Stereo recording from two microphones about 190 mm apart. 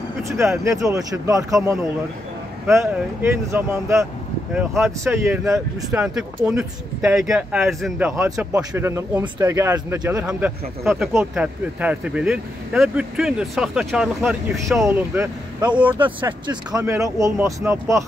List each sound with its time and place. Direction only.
0.2 s speech: 15° right (ahead or behind)
8.2 s speech: 15° right (ahead or behind)
16.4 s speech: 15° right (ahead or behind)